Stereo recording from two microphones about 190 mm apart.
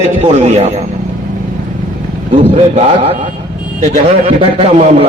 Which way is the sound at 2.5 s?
30° right (ahead or behind).